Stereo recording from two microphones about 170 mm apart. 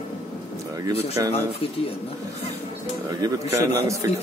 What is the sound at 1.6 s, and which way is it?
Speech, 35° left (ahead or behind).